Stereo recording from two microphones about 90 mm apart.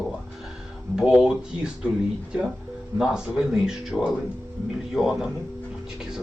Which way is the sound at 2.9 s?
5° right (ahead or behind).